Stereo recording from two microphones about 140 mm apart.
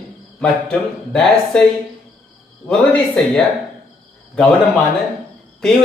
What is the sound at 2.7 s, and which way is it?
Speech, 5° left (ahead or behind).